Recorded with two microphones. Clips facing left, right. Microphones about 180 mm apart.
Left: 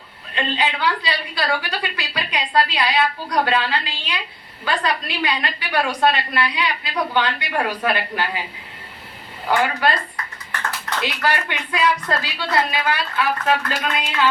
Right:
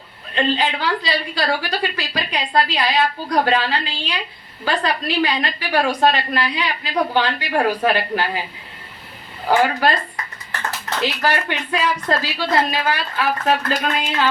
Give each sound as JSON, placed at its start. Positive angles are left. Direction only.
{"t": 0.3, "sound": "a woman's voice", "side_deg": -35}
{"t": 9.5, "sound": "a woman's voice", "side_deg": -35}